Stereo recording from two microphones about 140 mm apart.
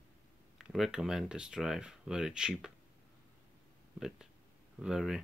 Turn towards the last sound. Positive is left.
turn(degrees=-5)  # may be behind; listen again after turning